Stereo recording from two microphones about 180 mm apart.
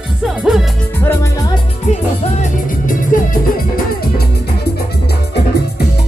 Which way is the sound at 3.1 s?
50° left (ahead or behind).